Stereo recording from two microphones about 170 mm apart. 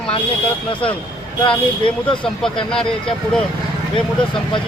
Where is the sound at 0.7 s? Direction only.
30° left (ahead or behind).